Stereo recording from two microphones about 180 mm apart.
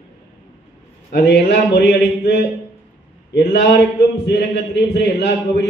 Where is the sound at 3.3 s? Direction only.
65° left (ahead or behind).